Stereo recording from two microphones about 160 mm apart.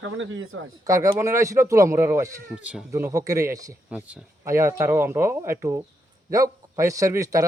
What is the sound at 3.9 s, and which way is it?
A man's voice, 10° right (ahead or behind).